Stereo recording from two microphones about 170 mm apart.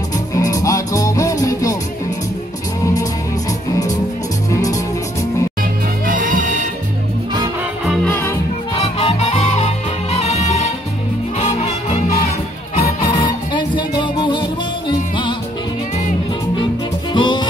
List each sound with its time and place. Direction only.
0.4 s music: 20° left (ahead or behind)
5.6 s music: 55° right (ahead or behind)
7.8 s music: centre (ahead or behind)
8.1 s music: 15° left (ahead or behind)
8.8 s music: 35° left (ahead or behind)
17.1 s music: 25° left (ahead or behind)